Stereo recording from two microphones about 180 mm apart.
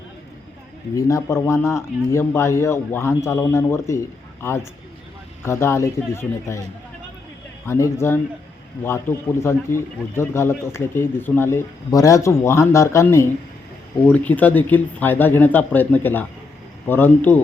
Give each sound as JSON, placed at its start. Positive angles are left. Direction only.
{"t": 0.9, "sound": "a man's voice", "side_deg": 20}
{"t": 5.5, "sound": "a man's voice", "side_deg": 15}
{"t": 7.7, "sound": "a man's voice", "side_deg": 15}